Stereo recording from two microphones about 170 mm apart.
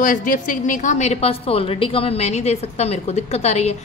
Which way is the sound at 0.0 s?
50° left (ahead or behind).